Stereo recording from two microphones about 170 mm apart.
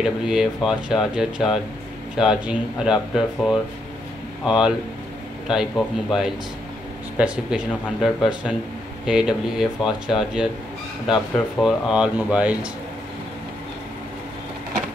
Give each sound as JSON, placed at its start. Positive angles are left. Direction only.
{"t": 0.0, "sound": "speech", "side_deg": -5}